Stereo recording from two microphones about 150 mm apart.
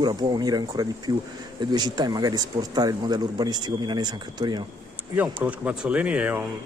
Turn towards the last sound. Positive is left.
turn(degrees=-10)  # may be behind; listen again after turning